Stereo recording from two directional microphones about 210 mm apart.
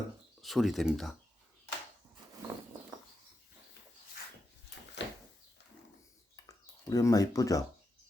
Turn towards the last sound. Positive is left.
turn(degrees=15)  # may be behind; listen again after turning